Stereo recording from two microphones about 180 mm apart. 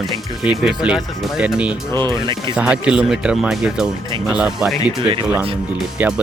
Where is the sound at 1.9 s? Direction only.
15° left (ahead or behind).